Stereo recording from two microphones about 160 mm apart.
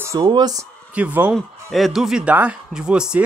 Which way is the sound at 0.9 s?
10° right (ahead or behind).